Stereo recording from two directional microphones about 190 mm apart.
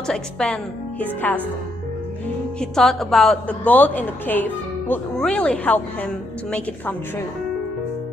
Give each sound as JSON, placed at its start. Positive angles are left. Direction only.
{"t": 0.0, "sound": "a woman's voice", "side_deg": 5}
{"t": 2.6, "sound": "a woman's voice", "side_deg": 0}